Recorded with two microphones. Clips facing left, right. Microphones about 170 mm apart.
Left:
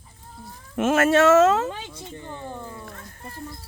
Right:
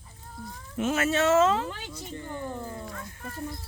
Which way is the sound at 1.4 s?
50° left (ahead or behind).